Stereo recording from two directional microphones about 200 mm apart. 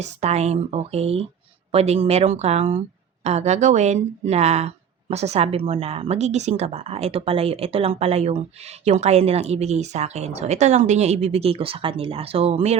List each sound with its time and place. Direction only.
0.0 s speech: 35° right (ahead or behind)